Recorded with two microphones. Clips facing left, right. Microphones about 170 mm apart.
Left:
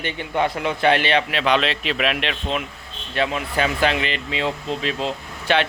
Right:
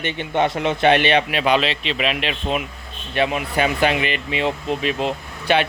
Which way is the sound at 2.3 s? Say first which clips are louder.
Right 2 dB; 10° right (ahead or behind).